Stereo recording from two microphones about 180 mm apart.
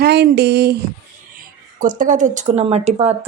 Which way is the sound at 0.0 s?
65° right (ahead or behind).